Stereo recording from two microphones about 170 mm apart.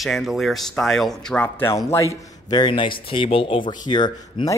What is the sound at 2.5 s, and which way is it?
Speech, 30° left (ahead or behind).